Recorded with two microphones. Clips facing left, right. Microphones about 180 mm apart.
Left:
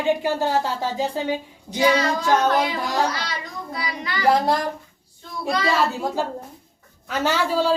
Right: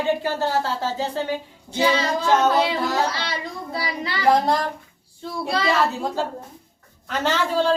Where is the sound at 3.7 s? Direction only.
30° right (ahead or behind).